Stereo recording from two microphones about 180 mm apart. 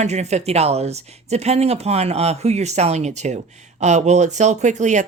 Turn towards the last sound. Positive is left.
turn(degrees=-40)  # may be behind; listen again after turning